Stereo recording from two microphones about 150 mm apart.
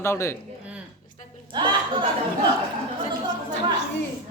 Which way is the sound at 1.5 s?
30° right (ahead or behind).